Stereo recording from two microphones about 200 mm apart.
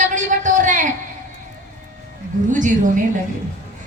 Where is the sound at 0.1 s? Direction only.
40° right (ahead or behind).